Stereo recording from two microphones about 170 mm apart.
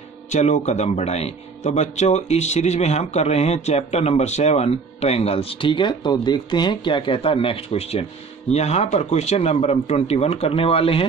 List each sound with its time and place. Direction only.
0.3 s speech: 40° left (ahead or behind)